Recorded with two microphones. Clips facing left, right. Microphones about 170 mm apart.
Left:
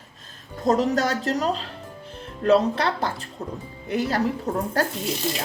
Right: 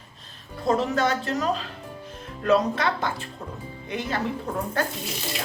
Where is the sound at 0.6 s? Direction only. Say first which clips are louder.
Left 2 dB; 40° left (ahead or behind).